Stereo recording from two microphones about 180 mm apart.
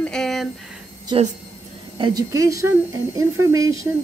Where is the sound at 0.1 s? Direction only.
Centre (ahead or behind).